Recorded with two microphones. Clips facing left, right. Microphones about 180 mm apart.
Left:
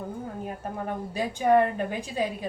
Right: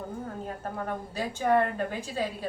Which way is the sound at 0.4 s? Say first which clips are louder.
Left 2 dB; 15° left (ahead or behind).